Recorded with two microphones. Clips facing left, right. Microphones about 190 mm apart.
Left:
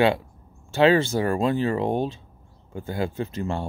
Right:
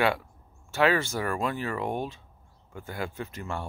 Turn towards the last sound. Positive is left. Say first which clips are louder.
# left 7 dB
turn(degrees=25)  # may be behind; listen again after turning